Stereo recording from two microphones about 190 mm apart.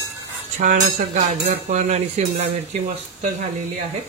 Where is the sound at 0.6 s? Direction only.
40° right (ahead or behind).